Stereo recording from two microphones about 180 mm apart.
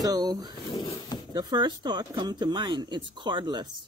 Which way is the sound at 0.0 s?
20° right (ahead or behind).